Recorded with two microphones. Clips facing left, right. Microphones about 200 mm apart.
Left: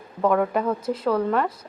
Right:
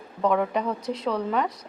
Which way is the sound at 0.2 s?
5° left (ahead or behind).